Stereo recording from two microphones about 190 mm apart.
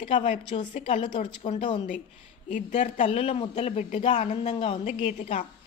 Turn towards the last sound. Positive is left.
turn(degrees=30)  # may be behind; listen again after turning